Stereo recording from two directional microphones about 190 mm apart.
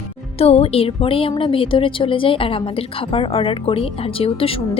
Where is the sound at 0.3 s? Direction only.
30° left (ahead or behind).